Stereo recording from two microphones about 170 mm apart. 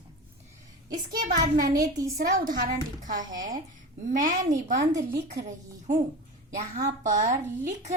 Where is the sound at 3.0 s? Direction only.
50° right (ahead or behind).